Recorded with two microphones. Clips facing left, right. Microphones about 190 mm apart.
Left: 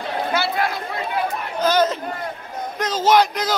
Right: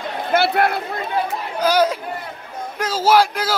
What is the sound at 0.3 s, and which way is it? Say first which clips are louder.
Speech: right 7 dB; 60° right (ahead or behind).